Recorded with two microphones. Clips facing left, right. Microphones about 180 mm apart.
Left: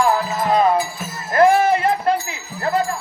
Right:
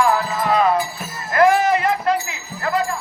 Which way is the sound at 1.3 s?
30° left (ahead or behind).